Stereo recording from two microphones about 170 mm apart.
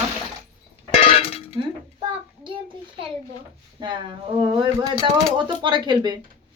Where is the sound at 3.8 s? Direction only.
25° right (ahead or behind).